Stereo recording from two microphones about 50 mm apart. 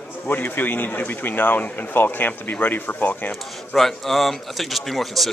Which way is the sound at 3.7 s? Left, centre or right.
Centre.